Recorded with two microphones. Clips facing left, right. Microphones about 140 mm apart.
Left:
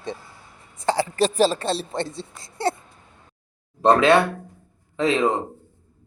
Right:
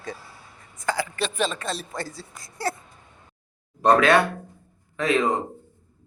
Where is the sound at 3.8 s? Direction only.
25° left (ahead or behind).